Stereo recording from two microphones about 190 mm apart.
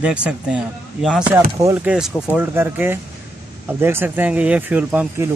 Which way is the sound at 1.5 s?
15° right (ahead or behind).